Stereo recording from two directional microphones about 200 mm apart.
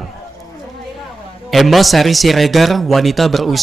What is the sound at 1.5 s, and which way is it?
A man's voice, centre (ahead or behind).